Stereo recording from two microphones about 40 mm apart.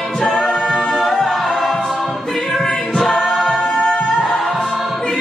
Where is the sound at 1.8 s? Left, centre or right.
Centre.